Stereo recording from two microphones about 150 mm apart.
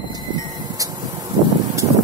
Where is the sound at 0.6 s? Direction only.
25° right (ahead or behind).